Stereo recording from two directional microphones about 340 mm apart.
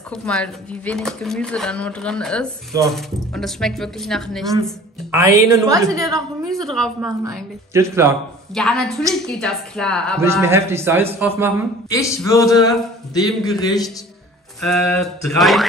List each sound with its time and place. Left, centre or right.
0.1 s a woman's voice: centre
6.6 s a woman's voice: centre
11.9 s a man's voice: centre
14.6 s speech: centre